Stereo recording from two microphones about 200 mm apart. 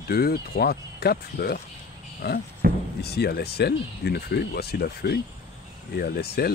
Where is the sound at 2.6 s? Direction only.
50° right (ahead or behind).